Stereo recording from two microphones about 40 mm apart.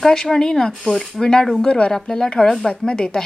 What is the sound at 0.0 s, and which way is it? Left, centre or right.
A woman's voice, centre.